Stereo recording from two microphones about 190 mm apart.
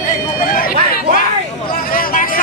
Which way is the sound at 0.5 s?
50° left (ahead or behind).